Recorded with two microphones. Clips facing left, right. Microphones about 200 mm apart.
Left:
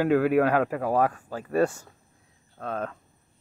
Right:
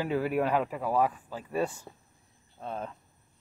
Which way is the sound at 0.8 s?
45° left (ahead or behind).